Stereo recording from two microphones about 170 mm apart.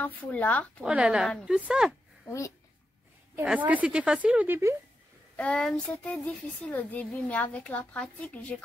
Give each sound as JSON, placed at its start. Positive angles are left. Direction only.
{"t": 0.0, "sound": "speech", "side_deg": 10}
{"t": 0.8, "sound": "speech", "side_deg": -5}
{"t": 2.2, "sound": "speech", "side_deg": 15}
{"t": 3.4, "sound": "a woman's voice", "side_deg": -10}
{"t": 5.3, "sound": "speech", "side_deg": 5}